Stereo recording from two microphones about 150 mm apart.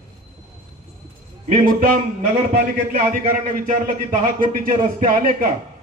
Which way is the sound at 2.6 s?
70° right (ahead or behind).